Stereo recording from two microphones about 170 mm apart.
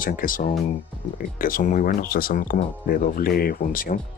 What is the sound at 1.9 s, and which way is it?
Speech, 60° left (ahead or behind).